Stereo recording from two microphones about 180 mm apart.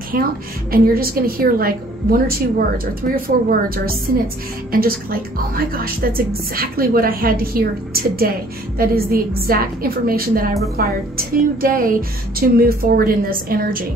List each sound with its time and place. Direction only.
0.1 s a woman's voice: 55° right (ahead or behind)